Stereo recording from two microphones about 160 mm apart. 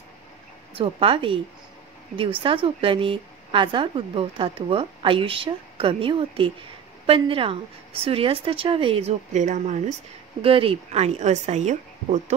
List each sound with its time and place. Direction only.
0.7 s a woman's voice: 35° right (ahead or behind)
2.4 s a woman's voice: 35° right (ahead or behind)
10.4 s a woman's voice: 35° right (ahead or behind)